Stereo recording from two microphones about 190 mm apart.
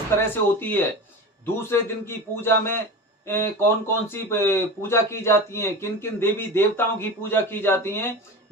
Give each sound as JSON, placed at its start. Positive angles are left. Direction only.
{"t": 0.2, "sound": "speech", "side_deg": 10}